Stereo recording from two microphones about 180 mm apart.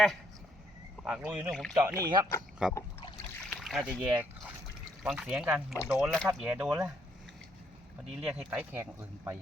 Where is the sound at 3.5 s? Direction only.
Centre (ahead or behind).